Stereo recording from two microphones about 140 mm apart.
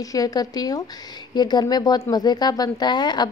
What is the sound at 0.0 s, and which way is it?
Speech, 25° left (ahead or behind).